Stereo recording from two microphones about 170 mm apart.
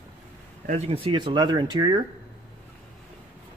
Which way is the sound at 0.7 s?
40° right (ahead or behind).